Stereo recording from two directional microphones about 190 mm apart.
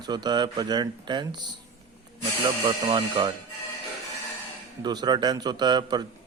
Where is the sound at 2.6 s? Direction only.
25° right (ahead or behind).